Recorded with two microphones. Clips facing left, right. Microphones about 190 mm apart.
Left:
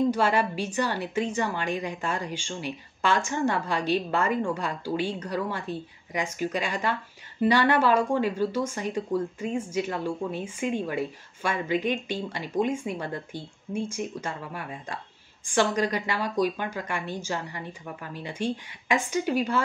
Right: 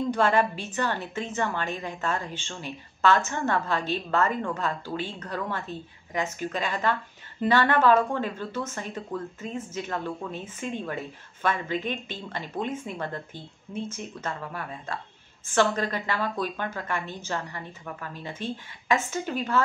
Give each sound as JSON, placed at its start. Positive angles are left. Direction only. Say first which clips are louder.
{"t": 0.1, "sound": "a woman's voice", "louder": "right 1 dB", "side_deg": 10}